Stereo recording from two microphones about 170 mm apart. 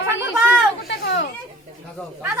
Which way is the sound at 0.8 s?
90° left.